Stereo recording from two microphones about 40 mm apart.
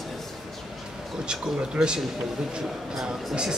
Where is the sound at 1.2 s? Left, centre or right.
Right.